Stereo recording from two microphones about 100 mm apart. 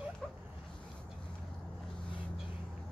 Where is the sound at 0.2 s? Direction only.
10° left (ahead or behind).